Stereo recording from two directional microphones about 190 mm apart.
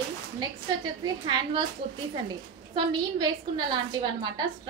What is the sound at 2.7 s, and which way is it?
A woman's voice, 25° right (ahead or behind).